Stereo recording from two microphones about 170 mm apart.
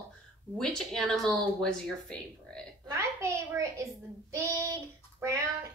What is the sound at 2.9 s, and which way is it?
A child's voice, 15° right (ahead or behind).